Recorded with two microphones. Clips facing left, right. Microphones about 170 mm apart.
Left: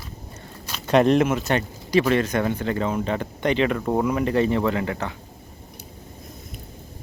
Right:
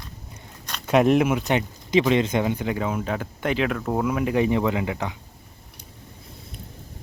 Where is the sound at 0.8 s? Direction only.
5° right (ahead or behind).